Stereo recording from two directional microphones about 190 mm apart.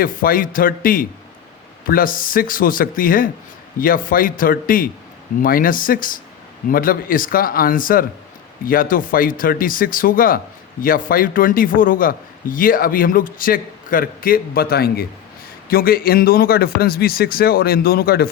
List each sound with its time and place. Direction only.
0.0 s a man's voice: 50° left (ahead or behind)